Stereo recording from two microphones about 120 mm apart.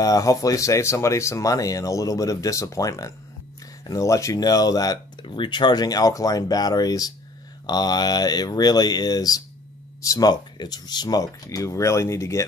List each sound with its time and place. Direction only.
0.0 s speech: 30° left (ahead or behind)
5.2 s speech: 40° left (ahead or behind); by 12.4 s 25° left (ahead or behind)